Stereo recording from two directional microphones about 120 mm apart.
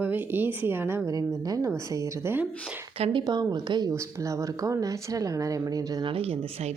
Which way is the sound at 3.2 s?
35° right (ahead or behind).